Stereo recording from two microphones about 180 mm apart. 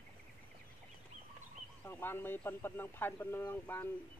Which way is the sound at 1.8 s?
10° left (ahead or behind).